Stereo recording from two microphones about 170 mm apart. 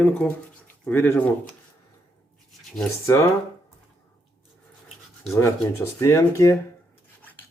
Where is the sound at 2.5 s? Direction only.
Centre (ahead or behind).